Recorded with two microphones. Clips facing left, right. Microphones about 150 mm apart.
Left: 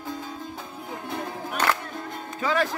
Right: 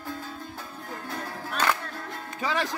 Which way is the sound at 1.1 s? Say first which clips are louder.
Left 4 dB; 15° left (ahead or behind).